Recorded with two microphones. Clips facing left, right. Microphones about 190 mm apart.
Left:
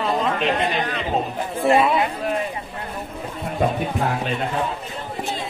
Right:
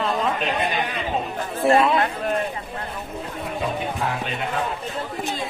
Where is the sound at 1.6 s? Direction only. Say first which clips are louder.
Even; centre (ahead or behind).